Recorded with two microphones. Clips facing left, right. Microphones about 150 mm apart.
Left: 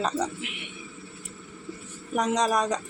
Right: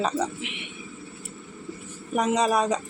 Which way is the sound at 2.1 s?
5° right (ahead or behind).